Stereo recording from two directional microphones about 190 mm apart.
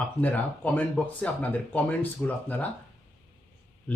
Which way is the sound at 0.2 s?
10° left (ahead or behind).